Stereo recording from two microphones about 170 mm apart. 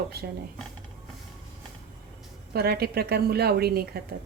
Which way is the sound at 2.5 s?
70° right (ahead or behind).